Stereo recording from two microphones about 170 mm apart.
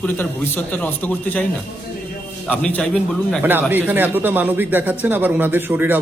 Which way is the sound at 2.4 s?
10° left (ahead or behind).